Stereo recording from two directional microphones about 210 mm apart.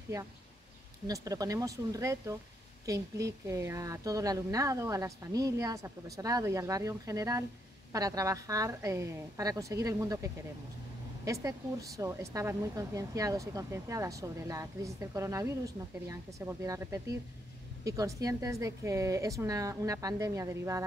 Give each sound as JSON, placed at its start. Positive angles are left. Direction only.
{"t": 1.0, "sound": "speech", "side_deg": -15}